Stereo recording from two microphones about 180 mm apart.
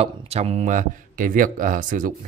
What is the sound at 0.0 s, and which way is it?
Speech, 35° right (ahead or behind).